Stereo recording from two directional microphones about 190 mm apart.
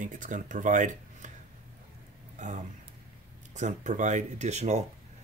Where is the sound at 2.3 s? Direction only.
40° right (ahead or behind).